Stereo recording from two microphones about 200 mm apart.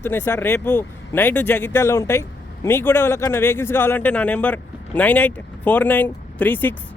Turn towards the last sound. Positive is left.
turn(degrees=10)  # may be behind; listen again after turning